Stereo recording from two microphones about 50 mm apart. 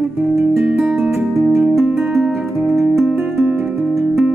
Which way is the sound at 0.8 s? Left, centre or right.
Right.